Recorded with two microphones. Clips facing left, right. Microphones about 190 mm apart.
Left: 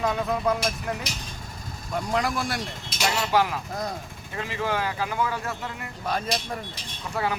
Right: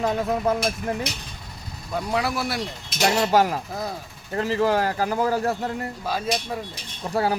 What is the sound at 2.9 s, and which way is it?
Speech, 40° right (ahead or behind).